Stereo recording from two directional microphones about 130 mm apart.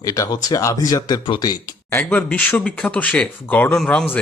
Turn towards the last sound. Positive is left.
turn(degrees=10)  # may be behind; listen again after turning